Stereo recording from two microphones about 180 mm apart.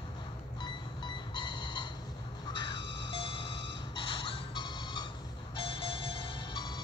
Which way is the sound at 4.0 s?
30° left (ahead or behind).